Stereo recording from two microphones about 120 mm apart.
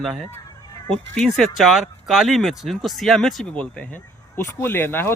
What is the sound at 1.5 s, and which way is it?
A man's voice, centre (ahead or behind).